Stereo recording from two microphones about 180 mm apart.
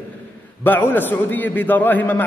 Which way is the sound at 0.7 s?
10° left (ahead or behind).